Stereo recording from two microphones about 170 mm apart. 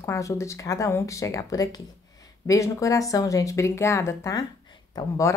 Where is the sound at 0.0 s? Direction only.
15° left (ahead or behind).